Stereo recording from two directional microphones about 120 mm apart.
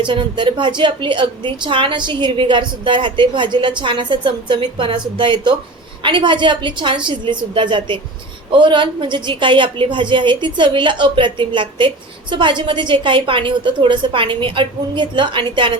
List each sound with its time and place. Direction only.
0.0 s a woman's voice: 40° right (ahead or behind)